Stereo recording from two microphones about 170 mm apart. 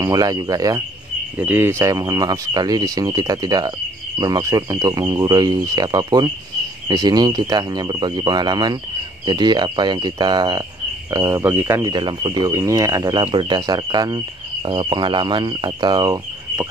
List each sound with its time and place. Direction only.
0.0 s speech: 20° right (ahead or behind)
11.9 s speech: 25° right (ahead or behind)